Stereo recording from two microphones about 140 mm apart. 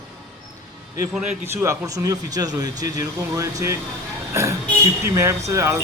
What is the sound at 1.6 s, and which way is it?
Speech, 20° right (ahead or behind).